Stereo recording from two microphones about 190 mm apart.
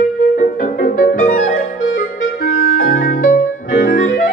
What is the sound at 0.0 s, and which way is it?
Music, 45° left (ahead or behind).